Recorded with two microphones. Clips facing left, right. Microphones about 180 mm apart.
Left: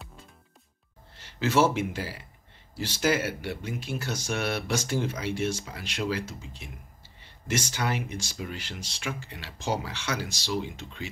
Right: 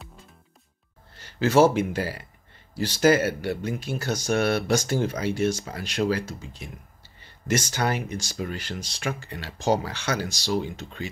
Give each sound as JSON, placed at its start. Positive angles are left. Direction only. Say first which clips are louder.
{"t": 1.1, "sound": "speech", "louder": "right 5 dB", "side_deg": -40}
{"t": 2.0, "sound": "speech", "louder": "right 6 dB", "side_deg": -55}
{"t": 2.9, "sound": "speech", "louder": "right 7 dB", "side_deg": -40}
{"t": 7.4, "sound": "speech", "louder": "right 4 dB", "side_deg": -40}